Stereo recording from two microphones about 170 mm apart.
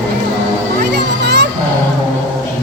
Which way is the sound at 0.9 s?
85° right.